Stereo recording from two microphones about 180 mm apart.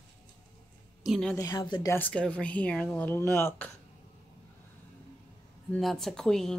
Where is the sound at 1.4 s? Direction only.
20° left (ahead or behind).